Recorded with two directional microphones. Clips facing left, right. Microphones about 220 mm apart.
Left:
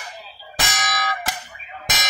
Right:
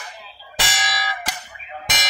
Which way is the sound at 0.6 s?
45° left (ahead or behind).